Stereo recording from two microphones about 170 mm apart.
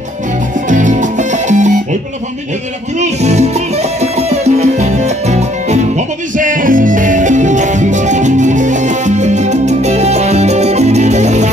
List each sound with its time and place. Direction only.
0.7 s music: 50° right (ahead or behind)
3.0 s music: 40° right (ahead or behind)